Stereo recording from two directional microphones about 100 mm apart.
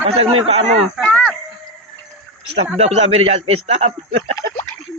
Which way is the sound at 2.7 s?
90° right.